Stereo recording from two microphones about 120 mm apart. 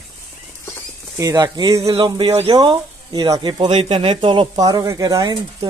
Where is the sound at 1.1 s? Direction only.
30° right (ahead or behind).